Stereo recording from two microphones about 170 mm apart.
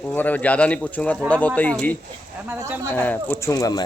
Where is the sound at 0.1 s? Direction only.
10° left (ahead or behind).